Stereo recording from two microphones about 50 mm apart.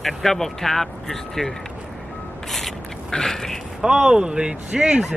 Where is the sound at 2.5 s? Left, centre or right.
Centre.